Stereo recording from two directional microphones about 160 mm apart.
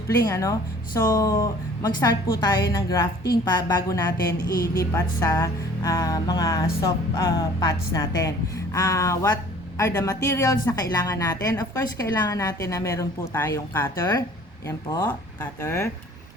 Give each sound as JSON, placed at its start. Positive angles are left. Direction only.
{"t": 0.3, "sound": "a woman's voice", "side_deg": 20}